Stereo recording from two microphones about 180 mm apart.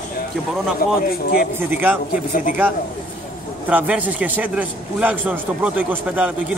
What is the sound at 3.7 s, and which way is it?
A man's voice, 10° right (ahead or behind).